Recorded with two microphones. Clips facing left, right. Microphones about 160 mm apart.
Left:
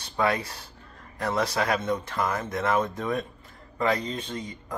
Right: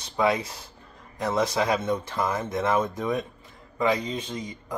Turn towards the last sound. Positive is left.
turn(degrees=-15)  # may be behind; listen again after turning